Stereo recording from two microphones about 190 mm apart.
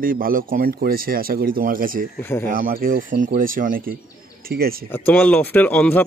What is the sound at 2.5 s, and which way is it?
Speech, 45° right (ahead or behind).